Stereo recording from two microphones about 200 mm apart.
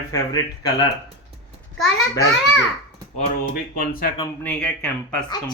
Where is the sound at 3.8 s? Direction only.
45° left (ahead or behind).